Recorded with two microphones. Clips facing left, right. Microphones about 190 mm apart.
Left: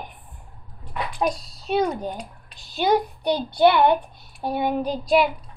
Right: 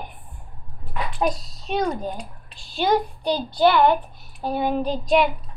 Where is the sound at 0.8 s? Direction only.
Centre (ahead or behind).